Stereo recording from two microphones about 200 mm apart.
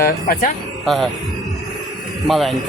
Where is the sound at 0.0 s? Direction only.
45° left (ahead or behind).